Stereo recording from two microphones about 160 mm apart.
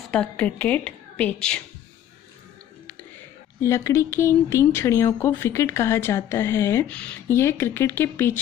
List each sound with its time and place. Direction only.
0.1 s speech: 5° left (ahead or behind)
3.6 s speech: 15° left (ahead or behind)